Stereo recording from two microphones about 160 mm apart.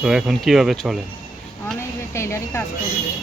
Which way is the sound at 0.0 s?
5° right (ahead or behind).